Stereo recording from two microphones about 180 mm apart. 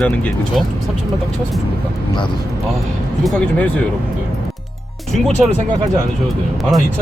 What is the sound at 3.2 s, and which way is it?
Speech, 5° left (ahead or behind).